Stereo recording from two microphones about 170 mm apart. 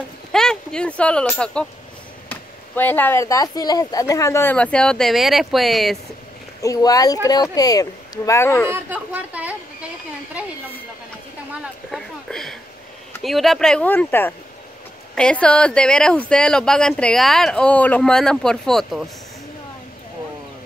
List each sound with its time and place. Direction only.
0.3 s a child's voice: 5° left (ahead or behind)
6.6 s speech: 20° left (ahead or behind)
8.6 s speech: 10° right (ahead or behind)
11.9 s speech: centre (ahead or behind)